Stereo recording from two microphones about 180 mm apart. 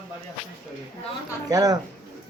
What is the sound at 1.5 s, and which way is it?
Speech, 20° right (ahead or behind).